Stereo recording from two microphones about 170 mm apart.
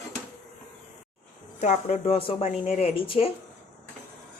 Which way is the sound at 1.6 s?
45° left (ahead or behind).